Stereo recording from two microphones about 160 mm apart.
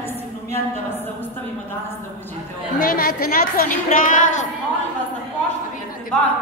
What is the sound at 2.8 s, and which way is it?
A woman's voice, 65° left (ahead or behind).